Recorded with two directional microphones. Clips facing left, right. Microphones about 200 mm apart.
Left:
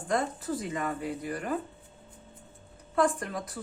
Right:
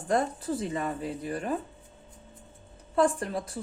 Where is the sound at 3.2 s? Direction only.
30° right (ahead or behind).